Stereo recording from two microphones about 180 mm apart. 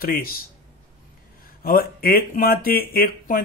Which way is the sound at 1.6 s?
55° left (ahead or behind).